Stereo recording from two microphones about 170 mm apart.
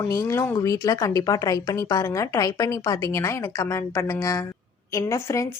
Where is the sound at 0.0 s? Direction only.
20° left (ahead or behind).